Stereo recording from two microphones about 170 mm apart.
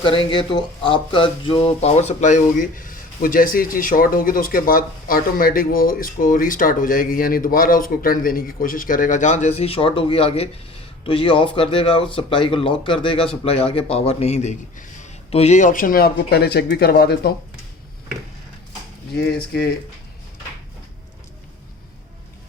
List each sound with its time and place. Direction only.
0.0 s speech: 30° left (ahead or behind); by 17.3 s 70° left (ahead or behind)